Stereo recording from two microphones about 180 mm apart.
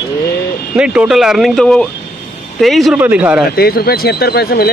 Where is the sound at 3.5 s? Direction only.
60° left (ahead or behind).